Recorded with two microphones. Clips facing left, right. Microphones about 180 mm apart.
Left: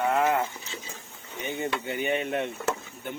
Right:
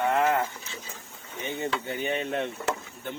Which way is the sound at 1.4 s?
15° left (ahead or behind).